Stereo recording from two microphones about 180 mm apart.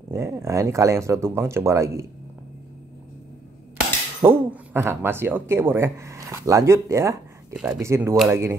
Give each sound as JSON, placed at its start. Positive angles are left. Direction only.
{"t": 0.1, "sound": "speech", "side_deg": -15}
{"t": 4.2, "sound": "speech", "side_deg": -15}
{"t": 7.5, "sound": "speech", "side_deg": -5}